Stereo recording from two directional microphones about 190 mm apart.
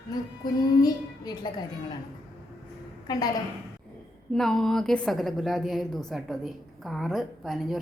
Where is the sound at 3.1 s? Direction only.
20° left (ahead or behind).